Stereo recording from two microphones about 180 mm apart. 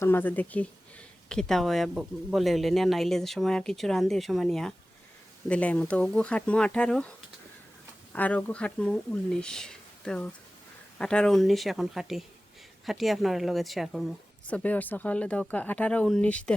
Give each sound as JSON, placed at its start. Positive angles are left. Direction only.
{"t": 0.0, "sound": "speech", "side_deg": 10}
{"t": 8.1, "sound": "speech", "side_deg": 10}